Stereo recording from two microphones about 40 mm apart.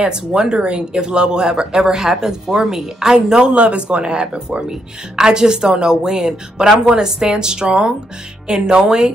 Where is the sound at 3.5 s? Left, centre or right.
Right.